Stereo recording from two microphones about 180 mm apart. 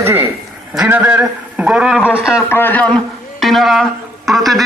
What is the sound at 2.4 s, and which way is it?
A man's voice, 10° left (ahead or behind).